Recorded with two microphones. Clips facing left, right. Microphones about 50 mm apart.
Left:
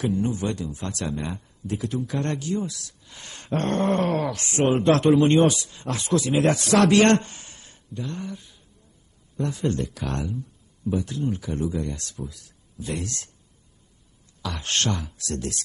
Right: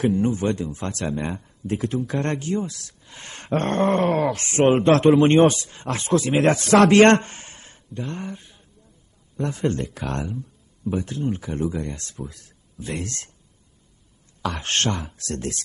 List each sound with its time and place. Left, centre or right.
0.0 s a man's voice: right
14.4 s a man's voice: right